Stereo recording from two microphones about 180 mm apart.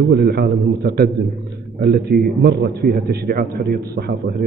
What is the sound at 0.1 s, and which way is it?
A man's voice, 60° right (ahead or behind).